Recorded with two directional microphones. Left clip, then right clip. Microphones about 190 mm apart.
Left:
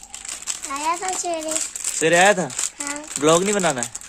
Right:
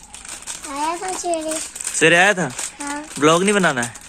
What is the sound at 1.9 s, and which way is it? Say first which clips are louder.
Speech: right 2 dB; 5° left (ahead or behind).